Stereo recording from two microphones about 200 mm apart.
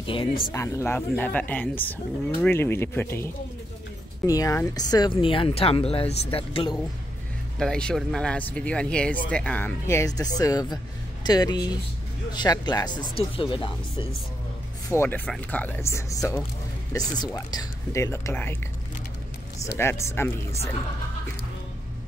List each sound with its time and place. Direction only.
0.0 s speech: 25° left (ahead or behind)
0.5 s speech: 15° left (ahead or behind)
4.3 s speech: 15° left (ahead or behind)
7.5 s speech: 5° left (ahead or behind); by 14.0 s 25° left (ahead or behind)
14.9 s speech: 10° left (ahead or behind)
19.6 s speech: 15° left (ahead or behind)